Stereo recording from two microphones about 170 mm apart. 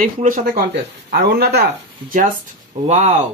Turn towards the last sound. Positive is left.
turn(degrees=-45)  # may be behind; listen again after turning